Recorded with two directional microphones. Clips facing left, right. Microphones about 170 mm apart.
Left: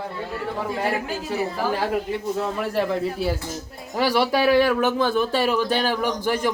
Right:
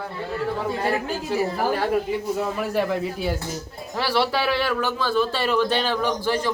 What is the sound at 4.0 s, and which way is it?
Speech, 15° left (ahead or behind).